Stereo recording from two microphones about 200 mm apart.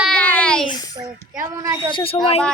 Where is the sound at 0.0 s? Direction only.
5° left (ahead or behind).